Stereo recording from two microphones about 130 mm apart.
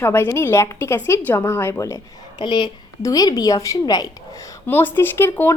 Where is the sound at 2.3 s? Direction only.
35° left (ahead or behind).